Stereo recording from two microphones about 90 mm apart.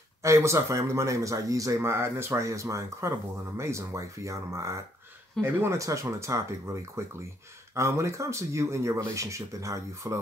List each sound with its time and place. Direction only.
0.2 s speech: 35° right (ahead or behind)